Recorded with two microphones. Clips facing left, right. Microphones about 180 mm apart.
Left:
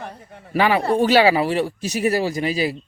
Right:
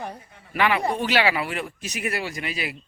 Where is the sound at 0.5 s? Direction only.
35° left (ahead or behind).